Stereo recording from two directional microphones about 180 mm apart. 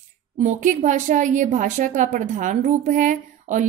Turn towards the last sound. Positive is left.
turn(degrees=-45)  # may be behind; listen again after turning